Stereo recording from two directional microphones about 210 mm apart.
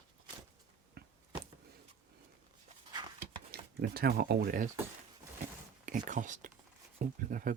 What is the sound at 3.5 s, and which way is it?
Speech, 45° right (ahead or behind).